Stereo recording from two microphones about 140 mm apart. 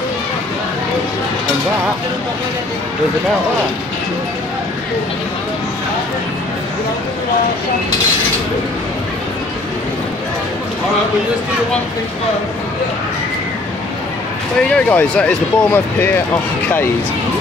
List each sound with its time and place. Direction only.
14.9 s speech: 10° left (ahead or behind)